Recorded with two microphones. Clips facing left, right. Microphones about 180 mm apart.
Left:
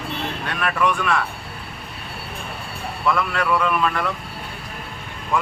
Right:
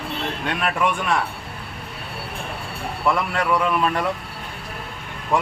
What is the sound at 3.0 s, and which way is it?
A man's voice, 25° right (ahead or behind).